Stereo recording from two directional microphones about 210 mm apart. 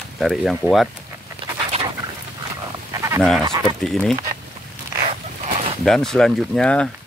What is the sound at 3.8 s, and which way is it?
Speech, centre (ahead or behind).